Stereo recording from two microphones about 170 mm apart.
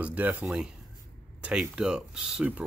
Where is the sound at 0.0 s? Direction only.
10° right (ahead or behind).